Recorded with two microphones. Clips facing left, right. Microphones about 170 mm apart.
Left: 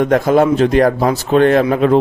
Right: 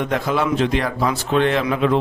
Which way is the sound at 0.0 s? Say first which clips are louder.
Left 9 dB; 45° left (ahead or behind).